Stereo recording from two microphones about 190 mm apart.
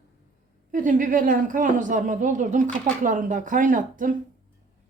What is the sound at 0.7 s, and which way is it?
Speech, 45° right (ahead or behind).